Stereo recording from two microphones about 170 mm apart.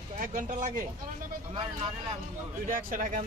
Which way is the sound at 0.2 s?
50° right (ahead or behind).